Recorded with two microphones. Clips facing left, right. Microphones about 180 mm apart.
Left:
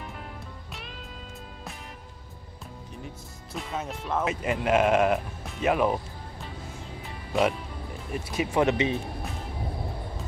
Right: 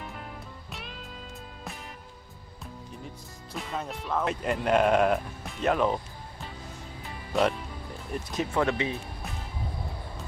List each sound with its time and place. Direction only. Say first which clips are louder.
0.7 s music: even; centre (ahead or behind)
3.5 s speech: left 1 dB; centre (ahead or behind)
7.3 s speech: left 1 dB; centre (ahead or behind)
8.6 s speech: left 4 dB; 20° left (ahead or behind)